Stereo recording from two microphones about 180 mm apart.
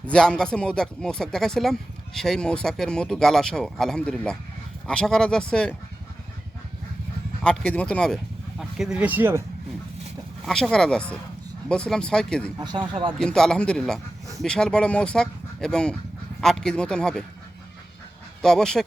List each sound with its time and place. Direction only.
0.0 s speech: 5° left (ahead or behind)
7.4 s speech: 5° left (ahead or behind); by 9.4 s 10° right (ahead or behind)
10.4 s speech: 5° left (ahead or behind)
12.5 s speech: 25° right (ahead or behind)
13.1 s speech: 5° left (ahead or behind)
18.4 s speech: 5° left (ahead or behind)